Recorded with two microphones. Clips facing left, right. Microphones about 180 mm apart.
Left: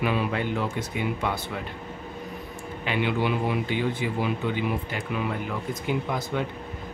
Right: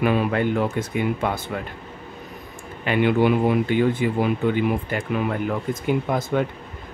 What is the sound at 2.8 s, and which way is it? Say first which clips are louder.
Speech: right 7 dB; 50° right (ahead or behind).